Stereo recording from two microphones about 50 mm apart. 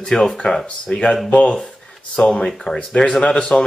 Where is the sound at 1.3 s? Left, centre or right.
Left.